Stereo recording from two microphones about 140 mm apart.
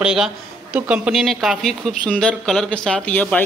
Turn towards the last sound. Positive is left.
turn(degrees=10)  # may be behind; listen again after turning